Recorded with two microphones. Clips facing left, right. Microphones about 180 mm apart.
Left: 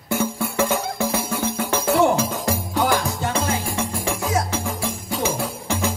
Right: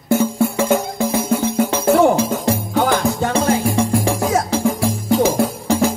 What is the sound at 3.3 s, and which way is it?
Music, 35° right (ahead or behind).